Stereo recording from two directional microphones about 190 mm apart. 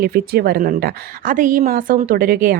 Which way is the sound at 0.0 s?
55° right (ahead or behind).